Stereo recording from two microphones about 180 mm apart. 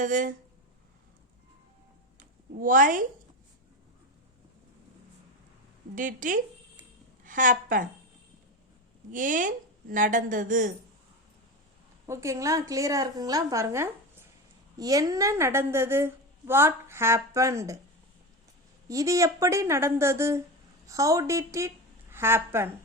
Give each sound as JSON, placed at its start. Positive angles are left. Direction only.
{"t": 0.0, "sound": "a woman's voice", "side_deg": -45}
{"t": 2.1, "sound": "a sound", "side_deg": -50}
{"t": 5.9, "sound": "a woman's voice", "side_deg": -45}
{"t": 9.1, "sound": "a woman's voice", "side_deg": -45}
{"t": 12.0, "sound": "a woman's voice", "side_deg": -15}
{"t": 18.9, "sound": "a woman's voice", "side_deg": -20}